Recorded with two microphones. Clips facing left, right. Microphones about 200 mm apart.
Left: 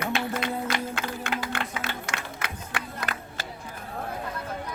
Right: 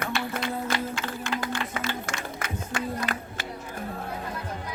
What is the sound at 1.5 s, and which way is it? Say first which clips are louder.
Music: right 2 dB; 60° left (ahead or behind).